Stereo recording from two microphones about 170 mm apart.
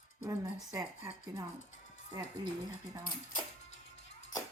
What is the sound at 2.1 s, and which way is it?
Speech, 25° right (ahead or behind).